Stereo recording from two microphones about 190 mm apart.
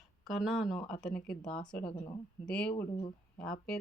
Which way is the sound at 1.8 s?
25° left (ahead or behind).